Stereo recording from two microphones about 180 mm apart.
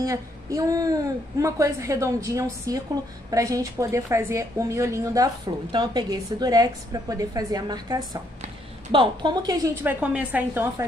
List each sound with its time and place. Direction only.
0.0 s a woman's voice: 20° right (ahead or behind)
9.8 s a woman's voice: 10° right (ahead or behind)